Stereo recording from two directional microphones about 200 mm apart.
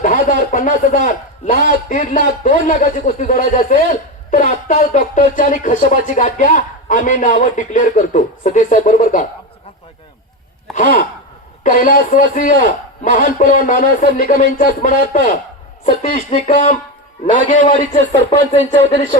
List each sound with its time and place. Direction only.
0.0 s a man's voice: 40° left (ahead or behind)
10.7 s sigh: centre (ahead or behind)
11.6 s a man's voice: 40° left (ahead or behind)